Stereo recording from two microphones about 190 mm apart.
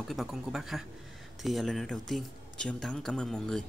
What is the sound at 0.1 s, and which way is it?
Speech, centre (ahead or behind).